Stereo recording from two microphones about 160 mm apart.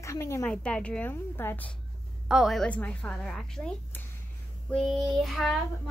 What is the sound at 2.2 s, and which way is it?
A woman's voice, centre (ahead or behind).